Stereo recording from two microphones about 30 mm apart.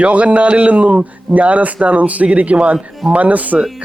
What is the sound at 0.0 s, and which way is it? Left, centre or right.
Speech, right.